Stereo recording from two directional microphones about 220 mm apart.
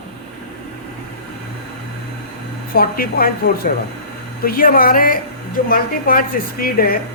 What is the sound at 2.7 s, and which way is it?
Speech, 40° left (ahead or behind).